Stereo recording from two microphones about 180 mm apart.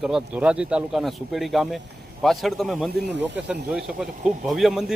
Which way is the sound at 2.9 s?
65° right (ahead or behind).